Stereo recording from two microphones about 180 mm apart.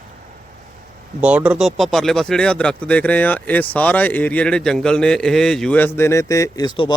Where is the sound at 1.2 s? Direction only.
5° right (ahead or behind).